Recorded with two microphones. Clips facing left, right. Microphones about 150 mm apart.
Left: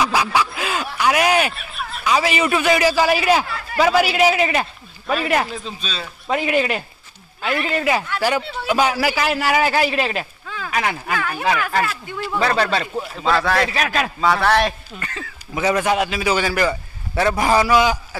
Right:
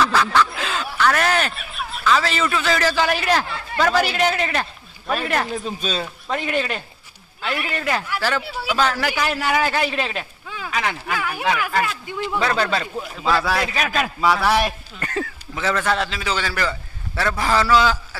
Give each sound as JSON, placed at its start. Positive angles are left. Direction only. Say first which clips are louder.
{"t": 0.0, "sound": "snicker", "louder": "right 1 dB", "side_deg": 10}
{"t": 0.5, "sound": "a sound", "louder": "left 2 dB", "side_deg": 10}
{"t": 1.5, "sound": "a sound", "louder": "even", "side_deg": 0}
{"t": 2.0, "sound": "a man's voice", "louder": "left 1 dB", "side_deg": 15}
{"t": 5.8, "sound": "speech", "louder": "right 5 dB", "side_deg": -50}
{"t": 6.3, "sound": "a man's voice", "louder": "left 4 dB", "side_deg": 5}
{"t": 11.1, "sound": "speech", "louder": "left 2 dB", "side_deg": -10}
{"t": 12.4, "sound": "speech", "louder": "left 3 dB", "side_deg": 0}
{"t": 15.0, "sound": "speech", "louder": "right 6 dB", "side_deg": -45}
{"t": 15.5, "sound": "a man's voice", "louder": "left 4 dB", "side_deg": 15}